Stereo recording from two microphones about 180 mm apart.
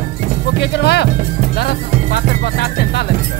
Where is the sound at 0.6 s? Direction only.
65° left (ahead or behind).